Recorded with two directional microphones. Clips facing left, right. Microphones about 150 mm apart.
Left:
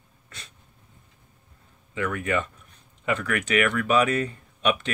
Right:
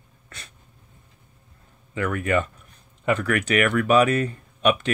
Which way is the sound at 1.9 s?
45° right (ahead or behind).